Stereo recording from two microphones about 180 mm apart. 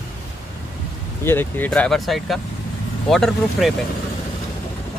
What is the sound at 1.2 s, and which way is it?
Speech, 10° left (ahead or behind).